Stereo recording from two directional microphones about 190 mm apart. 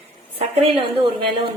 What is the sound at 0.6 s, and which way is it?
Speech, 25° right (ahead or behind).